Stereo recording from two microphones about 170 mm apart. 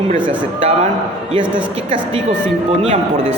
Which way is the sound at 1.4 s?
10° right (ahead or behind).